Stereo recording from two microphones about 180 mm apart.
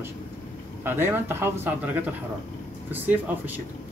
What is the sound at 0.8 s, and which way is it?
Speech, 10° right (ahead or behind).